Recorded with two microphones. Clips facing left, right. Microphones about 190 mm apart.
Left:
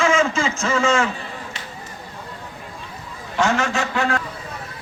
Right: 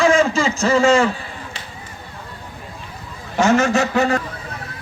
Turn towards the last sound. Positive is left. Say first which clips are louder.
# right 5 dB
turn(degrees=-40)  # may be behind; listen again after turning